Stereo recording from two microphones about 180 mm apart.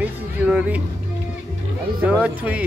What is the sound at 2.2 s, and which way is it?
Speech, 10° right (ahead or behind).